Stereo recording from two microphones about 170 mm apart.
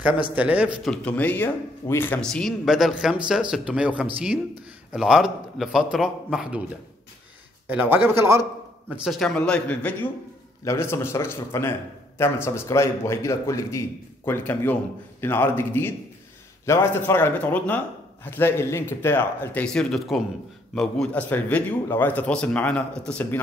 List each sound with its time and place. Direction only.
0.4 s a man's voice: 10° right (ahead or behind)
0.8 s speech: 10° left (ahead or behind)
7.6 s a man's voice: 10° right (ahead or behind)
8.9 s a man's voice: centre (ahead or behind)